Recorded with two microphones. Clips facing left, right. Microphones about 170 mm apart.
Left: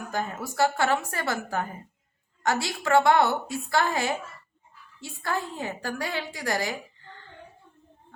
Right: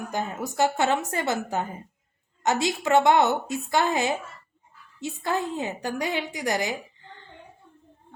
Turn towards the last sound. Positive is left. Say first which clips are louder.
# right 2 dB
turn(degrees=-20)  # may be behind; listen again after turning